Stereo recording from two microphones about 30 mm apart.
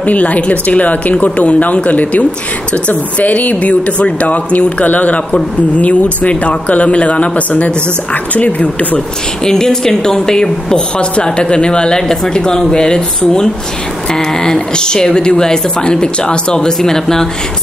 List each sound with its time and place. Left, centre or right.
0.0 s speech: left
9.4 s speech: left
11.4 s speech: left